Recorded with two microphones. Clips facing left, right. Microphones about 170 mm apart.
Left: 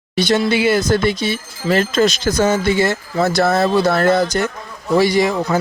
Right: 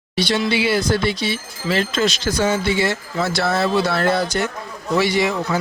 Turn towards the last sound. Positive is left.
turn(degrees=40)  # may be behind; listen again after turning